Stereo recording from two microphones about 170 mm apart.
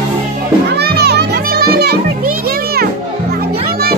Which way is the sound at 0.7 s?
70° right (ahead or behind).